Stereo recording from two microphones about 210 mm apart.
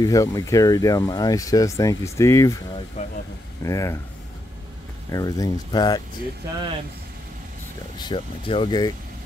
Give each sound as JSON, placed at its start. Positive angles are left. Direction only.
{"t": 0.0, "sound": "speech", "side_deg": 15}
{"t": 3.0, "sound": "vehicle", "side_deg": 35}
{"t": 3.6, "sound": "speech", "side_deg": 15}
{"t": 5.1, "sound": "speech", "side_deg": 15}
{"t": 8.0, "sound": "speech", "side_deg": 25}